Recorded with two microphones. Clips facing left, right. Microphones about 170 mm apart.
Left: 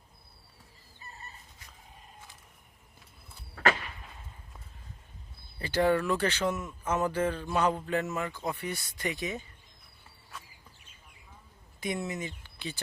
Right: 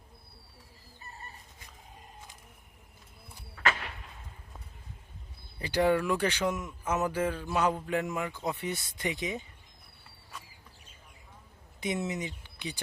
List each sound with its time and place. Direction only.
5.5 s a man's voice: 15° right (ahead or behind)
8.4 s speech: 20° right (ahead or behind)
11.8 s speech: 20° right (ahead or behind)